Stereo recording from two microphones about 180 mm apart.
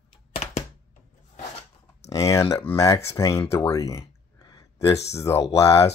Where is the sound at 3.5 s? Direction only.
15° left (ahead or behind).